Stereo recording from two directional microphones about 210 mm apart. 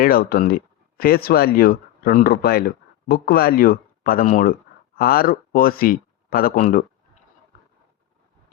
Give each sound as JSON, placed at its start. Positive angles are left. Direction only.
{"t": 0.0, "sound": "speech", "side_deg": 45}